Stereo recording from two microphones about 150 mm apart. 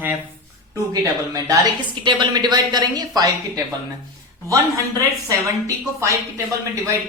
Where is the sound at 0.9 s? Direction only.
25° right (ahead or behind).